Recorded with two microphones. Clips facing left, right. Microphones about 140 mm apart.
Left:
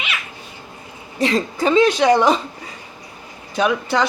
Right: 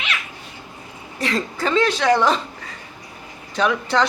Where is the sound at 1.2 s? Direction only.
20° left (ahead or behind).